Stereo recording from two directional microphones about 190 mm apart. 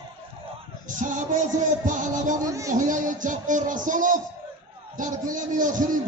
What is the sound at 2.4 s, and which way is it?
Speech, 15° right (ahead or behind).